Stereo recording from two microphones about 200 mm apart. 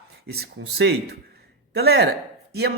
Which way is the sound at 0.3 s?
55° right (ahead or behind).